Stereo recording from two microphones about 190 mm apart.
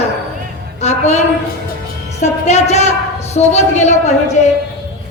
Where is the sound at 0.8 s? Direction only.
35° left (ahead or behind).